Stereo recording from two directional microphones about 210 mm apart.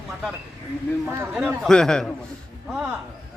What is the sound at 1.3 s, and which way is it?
Speech, centre (ahead or behind).